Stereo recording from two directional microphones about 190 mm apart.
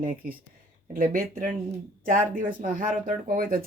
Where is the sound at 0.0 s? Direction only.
50° right (ahead or behind).